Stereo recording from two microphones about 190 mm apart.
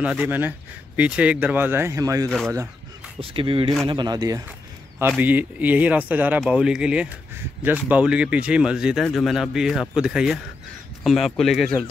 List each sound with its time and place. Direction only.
0.0 s speech: 10° right (ahead or behind)
3.2 s speech: 30° right (ahead or behind); by 11.8 s centre (ahead or behind)